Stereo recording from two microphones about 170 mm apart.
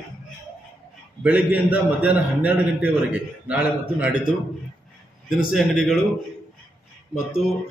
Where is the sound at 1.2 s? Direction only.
10° right (ahead or behind).